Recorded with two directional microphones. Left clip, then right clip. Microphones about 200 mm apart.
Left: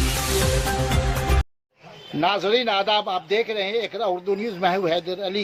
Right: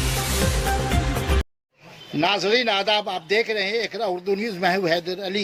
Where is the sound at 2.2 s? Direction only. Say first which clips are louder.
Even; 35° right (ahead or behind).